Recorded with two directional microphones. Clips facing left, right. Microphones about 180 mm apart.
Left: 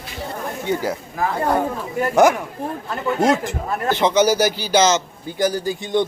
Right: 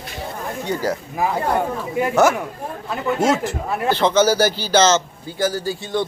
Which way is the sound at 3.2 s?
15° left (ahead or behind).